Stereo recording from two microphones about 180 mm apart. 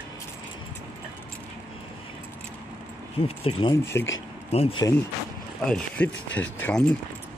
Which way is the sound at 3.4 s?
25° left (ahead or behind).